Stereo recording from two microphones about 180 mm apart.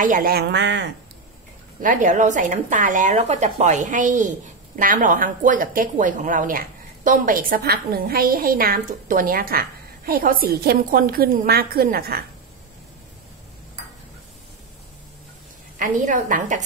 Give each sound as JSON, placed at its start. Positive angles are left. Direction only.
{"t": 0.0, "sound": "a woman's voice", "side_deg": -50}
{"t": 1.8, "sound": "speech", "side_deg": -45}
{"t": 15.8, "sound": "speech", "side_deg": -45}